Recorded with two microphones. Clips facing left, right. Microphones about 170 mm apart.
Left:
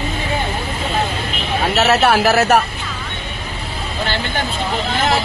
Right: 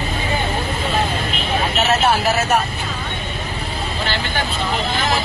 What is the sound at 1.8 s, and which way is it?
Speech, 70° left (ahead or behind).